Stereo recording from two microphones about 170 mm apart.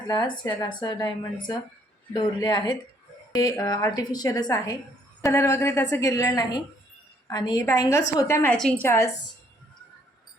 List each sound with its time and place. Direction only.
0.1 s a woman's voice: 25° left (ahead or behind)
8.5 s a woman's voice: 5° left (ahead or behind)